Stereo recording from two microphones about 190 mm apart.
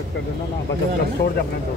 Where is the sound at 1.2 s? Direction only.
55° left (ahead or behind).